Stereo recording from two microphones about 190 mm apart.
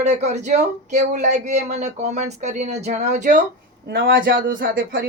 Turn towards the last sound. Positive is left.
turn(degrees=-50)  # may be behind; listen again after turning